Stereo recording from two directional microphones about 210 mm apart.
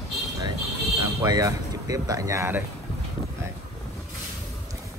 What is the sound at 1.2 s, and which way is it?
Speech, 15° right (ahead or behind).